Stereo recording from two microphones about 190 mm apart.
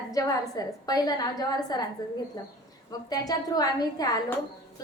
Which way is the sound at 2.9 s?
20° left (ahead or behind).